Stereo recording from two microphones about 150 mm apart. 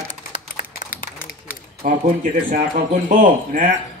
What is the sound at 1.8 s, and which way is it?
Speech, 65° right (ahead or behind).